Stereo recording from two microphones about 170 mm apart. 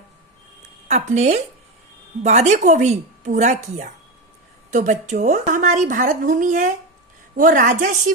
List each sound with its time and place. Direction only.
0.9 s a woman's voice: 40° right (ahead or behind)